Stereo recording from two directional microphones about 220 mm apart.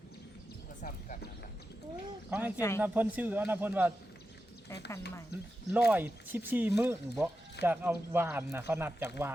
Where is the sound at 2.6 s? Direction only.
10° left (ahead or behind).